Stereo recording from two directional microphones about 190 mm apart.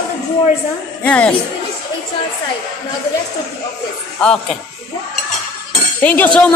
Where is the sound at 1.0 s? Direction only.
10° left (ahead or behind).